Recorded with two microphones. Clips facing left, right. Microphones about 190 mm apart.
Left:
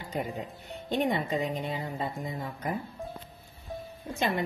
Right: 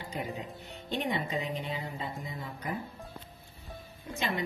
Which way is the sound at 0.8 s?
50° left (ahead or behind).